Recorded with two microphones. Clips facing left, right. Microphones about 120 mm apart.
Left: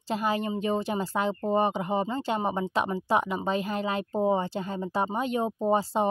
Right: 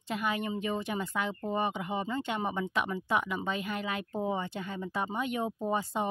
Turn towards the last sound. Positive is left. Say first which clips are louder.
# left 6 dB
turn(degrees=30)  # may be behind; listen again after turning